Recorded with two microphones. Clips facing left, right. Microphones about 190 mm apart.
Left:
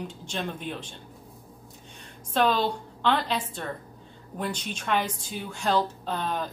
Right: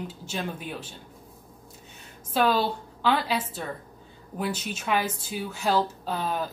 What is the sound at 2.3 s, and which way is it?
A woman's voice, 5° right (ahead or behind).